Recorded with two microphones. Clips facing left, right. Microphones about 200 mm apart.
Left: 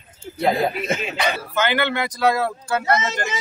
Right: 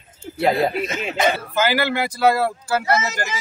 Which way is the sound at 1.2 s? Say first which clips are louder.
Right 6 dB; 45° right (ahead or behind).